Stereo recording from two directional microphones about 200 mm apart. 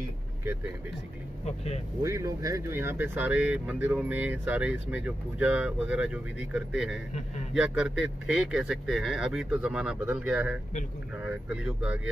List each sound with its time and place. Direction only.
1.4 s speech: 30° left (ahead or behind)
2.0 s speech: 15° right (ahead or behind)